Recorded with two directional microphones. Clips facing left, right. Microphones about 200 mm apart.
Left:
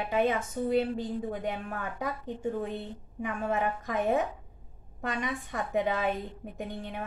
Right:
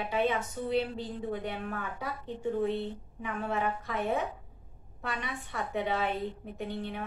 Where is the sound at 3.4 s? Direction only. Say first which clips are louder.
Left 2 dB; 45° left (ahead or behind).